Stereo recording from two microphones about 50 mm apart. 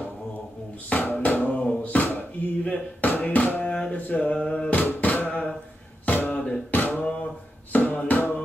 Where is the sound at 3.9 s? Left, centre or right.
Left.